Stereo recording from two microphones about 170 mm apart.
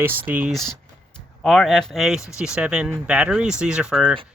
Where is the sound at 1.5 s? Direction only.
Centre (ahead or behind).